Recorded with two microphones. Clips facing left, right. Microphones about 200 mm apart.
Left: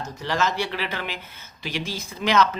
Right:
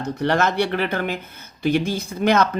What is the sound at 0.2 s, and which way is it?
Speech, 60° right (ahead or behind).